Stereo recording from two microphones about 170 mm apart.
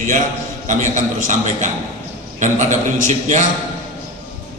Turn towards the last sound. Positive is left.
turn(degrees=-45)  # may be behind; listen again after turning